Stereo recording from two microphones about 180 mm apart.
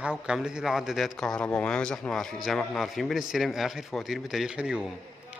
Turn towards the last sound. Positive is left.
turn(degrees=-5)  # may be behind; listen again after turning